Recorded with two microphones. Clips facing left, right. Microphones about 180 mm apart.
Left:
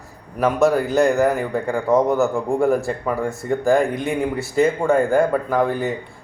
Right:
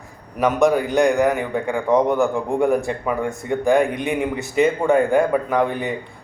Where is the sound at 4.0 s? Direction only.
20° right (ahead or behind).